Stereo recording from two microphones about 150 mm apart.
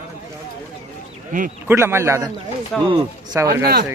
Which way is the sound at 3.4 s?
20° right (ahead or behind).